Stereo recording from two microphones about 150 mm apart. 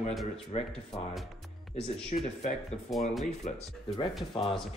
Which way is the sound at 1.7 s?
45° left (ahead or behind).